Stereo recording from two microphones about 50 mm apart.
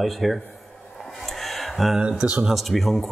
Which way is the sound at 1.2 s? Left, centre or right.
Centre.